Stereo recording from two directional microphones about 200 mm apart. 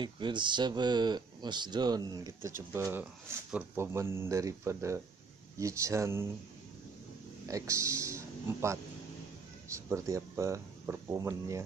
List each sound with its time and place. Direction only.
0.0 s speech: 25° right (ahead or behind)
7.4 s speech: 15° right (ahead or behind)